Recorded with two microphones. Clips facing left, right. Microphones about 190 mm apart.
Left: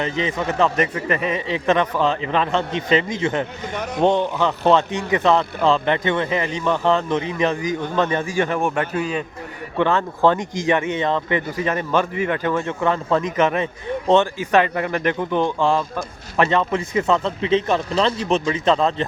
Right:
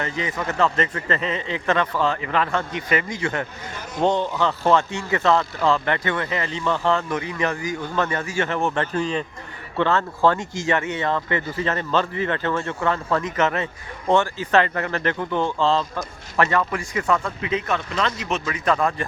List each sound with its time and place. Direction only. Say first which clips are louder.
0.0 s speech: left 4 dB; 20° left (ahead or behind)